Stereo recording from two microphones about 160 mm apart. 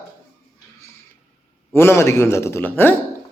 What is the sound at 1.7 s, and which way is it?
A man's voice, 15° left (ahead or behind).